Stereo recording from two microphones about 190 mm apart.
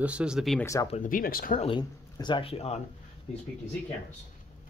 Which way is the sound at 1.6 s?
25° left (ahead or behind).